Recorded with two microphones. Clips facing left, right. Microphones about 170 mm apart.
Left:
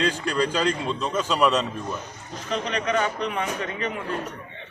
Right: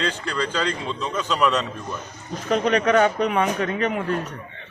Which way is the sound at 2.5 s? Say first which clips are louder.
Right 7 dB; 55° right (ahead or behind).